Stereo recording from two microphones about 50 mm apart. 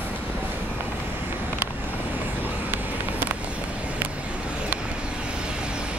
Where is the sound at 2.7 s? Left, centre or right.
Right.